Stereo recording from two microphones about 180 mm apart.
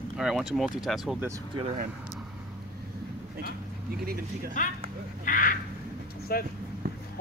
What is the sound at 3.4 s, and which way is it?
Speech, 55° right (ahead or behind).